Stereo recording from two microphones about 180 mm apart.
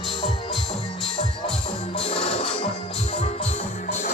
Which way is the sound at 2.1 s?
30° left (ahead or behind).